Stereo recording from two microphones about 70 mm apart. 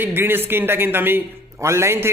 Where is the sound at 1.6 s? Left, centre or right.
Right.